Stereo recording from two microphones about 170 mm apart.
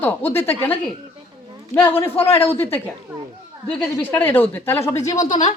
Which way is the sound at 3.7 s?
5° left (ahead or behind).